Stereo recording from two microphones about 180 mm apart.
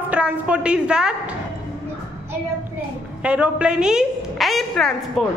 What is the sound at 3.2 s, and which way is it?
A woman's voice, 5° right (ahead or behind).